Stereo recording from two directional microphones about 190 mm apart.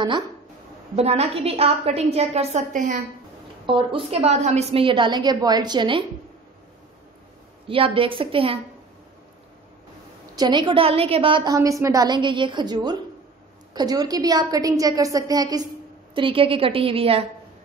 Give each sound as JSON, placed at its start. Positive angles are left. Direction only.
{"t": 0.9, "sound": "a woman's voice", "side_deg": -35}
{"t": 3.6, "sound": "a woman's voice", "side_deg": -25}
{"t": 7.6, "sound": "a woman's voice", "side_deg": -30}
{"t": 10.3, "sound": "a woman's voice", "side_deg": -25}